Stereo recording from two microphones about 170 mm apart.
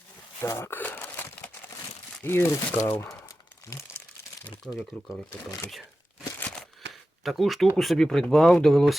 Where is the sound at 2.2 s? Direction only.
15° left (ahead or behind).